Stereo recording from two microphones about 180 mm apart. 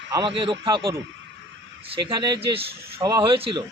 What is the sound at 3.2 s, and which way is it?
Speech, 30° right (ahead or behind).